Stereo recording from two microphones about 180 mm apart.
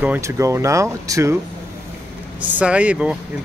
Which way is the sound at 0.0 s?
10° right (ahead or behind).